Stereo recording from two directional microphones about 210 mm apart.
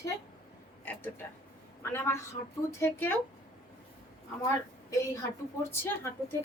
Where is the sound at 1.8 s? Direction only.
10° left (ahead or behind).